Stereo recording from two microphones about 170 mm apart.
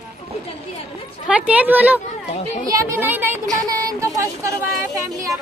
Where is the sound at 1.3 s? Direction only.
10° right (ahead or behind).